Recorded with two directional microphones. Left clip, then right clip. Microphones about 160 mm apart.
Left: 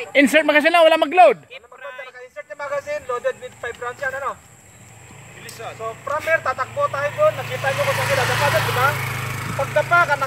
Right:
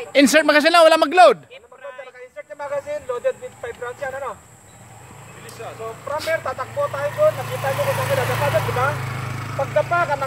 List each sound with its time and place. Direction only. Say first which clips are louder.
0.1 s speech: right 1 dB; 15° right (ahead or behind)
1.5 s a sound: left 2 dB; 10° left (ahead or behind)
2.3 s speech: left 1 dB; 15° right (ahead or behind)
6.0 s speech: left 3 dB; 15° right (ahead or behind)
7.1 s speech: right 3 dB; 45° right (ahead or behind)
8.0 s speech: left 2 dB; 10° right (ahead or behind)
8.9 s a sound: left 3 dB; 30° left (ahead or behind)
9.8 s speech: left 3 dB; 20° right (ahead or behind)